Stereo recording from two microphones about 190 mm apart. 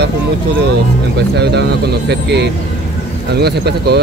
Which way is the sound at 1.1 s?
60° right (ahead or behind).